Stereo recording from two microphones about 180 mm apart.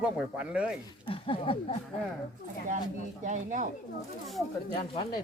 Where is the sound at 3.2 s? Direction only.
45° right (ahead or behind).